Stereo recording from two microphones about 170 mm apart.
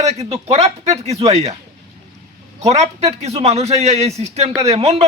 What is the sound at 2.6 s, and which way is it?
A man's voice, 40° right (ahead or behind).